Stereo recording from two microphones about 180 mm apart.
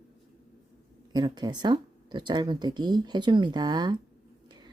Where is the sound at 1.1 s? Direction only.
25° right (ahead or behind).